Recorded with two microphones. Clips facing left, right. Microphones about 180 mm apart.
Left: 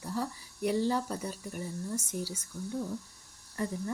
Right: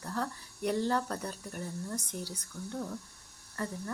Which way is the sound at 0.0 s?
10° left (ahead or behind).